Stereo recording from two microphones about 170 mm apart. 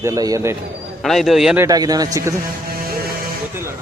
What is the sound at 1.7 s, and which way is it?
Speech, 20° right (ahead or behind).